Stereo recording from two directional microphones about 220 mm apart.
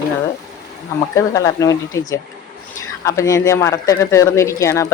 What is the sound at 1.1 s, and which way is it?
A man's voice, 15° left (ahead or behind).